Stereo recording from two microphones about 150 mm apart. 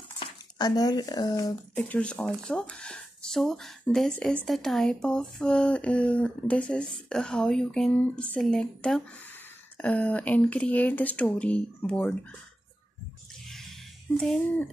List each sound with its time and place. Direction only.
0.2 s speech: 25° left (ahead or behind)
1.8 s speech: 10° left (ahead or behind)
13.5 s a sound: centre (ahead or behind)